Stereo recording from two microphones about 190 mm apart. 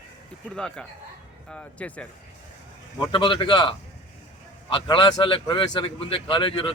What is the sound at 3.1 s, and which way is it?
A man's voice, 25° left (ahead or behind).